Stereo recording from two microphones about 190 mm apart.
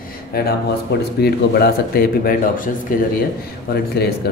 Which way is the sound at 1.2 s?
55° left (ahead or behind).